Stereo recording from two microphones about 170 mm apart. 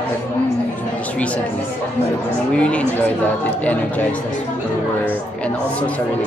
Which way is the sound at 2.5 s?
5° left (ahead or behind).